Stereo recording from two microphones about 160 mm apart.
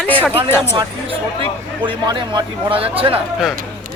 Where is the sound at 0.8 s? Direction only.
35° right (ahead or behind).